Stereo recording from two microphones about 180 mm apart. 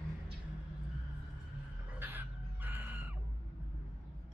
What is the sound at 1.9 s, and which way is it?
Chicken, 10° right (ahead or behind).